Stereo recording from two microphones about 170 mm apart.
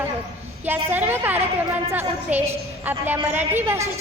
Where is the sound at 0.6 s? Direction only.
10° right (ahead or behind).